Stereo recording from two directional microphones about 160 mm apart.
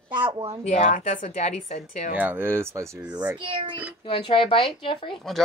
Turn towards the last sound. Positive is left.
turn(degrees=0)  # may be behind; listen again after turning